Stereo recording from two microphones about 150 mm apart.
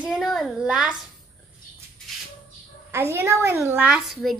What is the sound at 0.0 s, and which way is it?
Speech, centre (ahead or behind).